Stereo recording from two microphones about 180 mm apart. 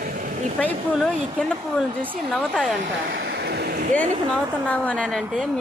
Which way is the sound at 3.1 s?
65° right (ahead or behind).